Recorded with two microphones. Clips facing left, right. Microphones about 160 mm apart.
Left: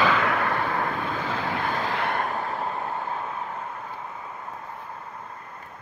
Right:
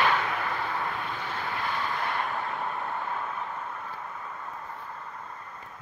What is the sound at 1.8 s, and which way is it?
Vehicle, 70° left (ahead or behind).